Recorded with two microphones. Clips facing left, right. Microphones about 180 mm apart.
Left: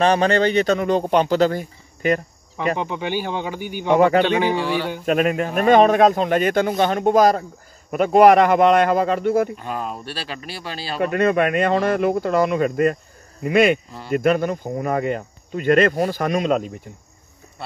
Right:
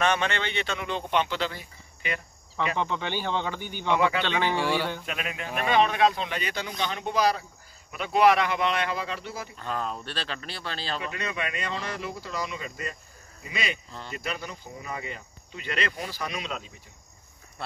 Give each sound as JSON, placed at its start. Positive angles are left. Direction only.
{"t": 0.0, "sound": "a man's voice", "side_deg": 35}
{"t": 2.8, "sound": "speech", "side_deg": 15}
{"t": 3.8, "sound": "speech", "side_deg": 45}
{"t": 4.2, "sound": "speech", "side_deg": 15}
{"t": 5.0, "sound": "speech", "side_deg": 45}
{"t": 9.6, "sound": "speech", "side_deg": 10}
{"t": 11.0, "sound": "speech", "side_deg": 55}
{"t": 17.6, "sound": "speech", "side_deg": 0}